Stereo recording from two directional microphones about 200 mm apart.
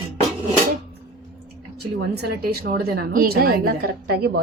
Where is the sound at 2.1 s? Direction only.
55° right (ahead or behind).